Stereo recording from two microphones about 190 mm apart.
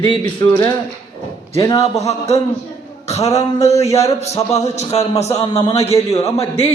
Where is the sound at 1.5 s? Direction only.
20° left (ahead or behind).